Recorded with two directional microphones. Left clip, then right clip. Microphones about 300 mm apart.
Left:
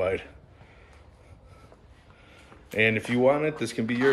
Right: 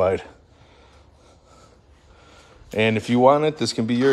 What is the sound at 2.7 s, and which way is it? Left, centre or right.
Speech, centre.